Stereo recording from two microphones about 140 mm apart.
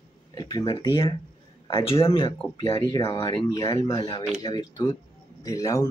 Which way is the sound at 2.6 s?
25° left (ahead or behind).